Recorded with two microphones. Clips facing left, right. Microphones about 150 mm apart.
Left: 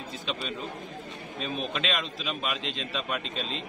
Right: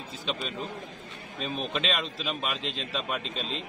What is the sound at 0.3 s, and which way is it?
A man's voice, centre (ahead or behind).